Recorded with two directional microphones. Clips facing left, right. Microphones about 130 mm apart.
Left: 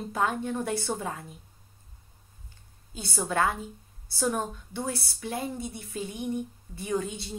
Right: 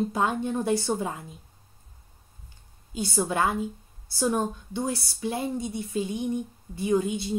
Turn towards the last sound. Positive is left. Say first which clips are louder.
# right 6 dB
turn(degrees=-15)  # may be behind; listen again after turning